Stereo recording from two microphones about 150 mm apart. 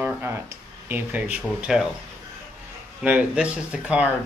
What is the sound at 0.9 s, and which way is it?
Speech, 10° right (ahead or behind).